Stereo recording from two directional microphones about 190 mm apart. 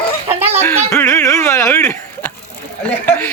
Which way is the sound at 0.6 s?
10° left (ahead or behind).